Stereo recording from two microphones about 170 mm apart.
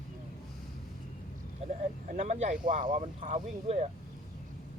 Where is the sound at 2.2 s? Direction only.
45° right (ahead or behind).